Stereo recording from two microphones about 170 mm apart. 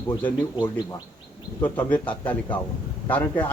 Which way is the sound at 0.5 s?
20° left (ahead or behind).